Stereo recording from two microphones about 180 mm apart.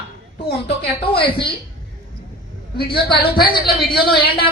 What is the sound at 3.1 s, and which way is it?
Speech, 60° left (ahead or behind).